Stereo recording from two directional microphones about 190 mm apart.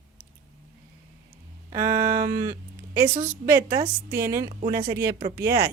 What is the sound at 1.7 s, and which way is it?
Music, 50° right (ahead or behind).